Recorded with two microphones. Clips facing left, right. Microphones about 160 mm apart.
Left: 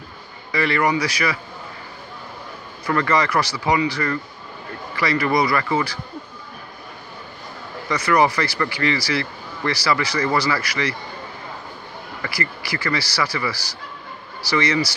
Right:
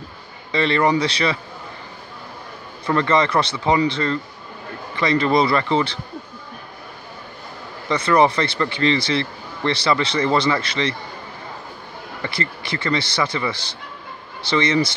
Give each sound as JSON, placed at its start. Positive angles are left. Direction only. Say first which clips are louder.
{"t": 0.5, "sound": "speech", "louder": "right 2 dB", "side_deg": -25}
{"t": 2.9, "sound": "speech", "louder": "right 2 dB", "side_deg": -25}
{"t": 7.9, "sound": "speech", "louder": "right 2 dB", "side_deg": -25}
{"t": 12.2, "sound": "speech", "louder": "right 1 dB", "side_deg": -25}